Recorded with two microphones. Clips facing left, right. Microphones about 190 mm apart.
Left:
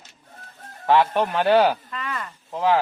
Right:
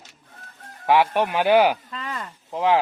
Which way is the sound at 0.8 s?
15° right (ahead or behind).